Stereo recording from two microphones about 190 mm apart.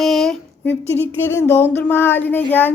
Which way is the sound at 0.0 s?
Centre (ahead or behind).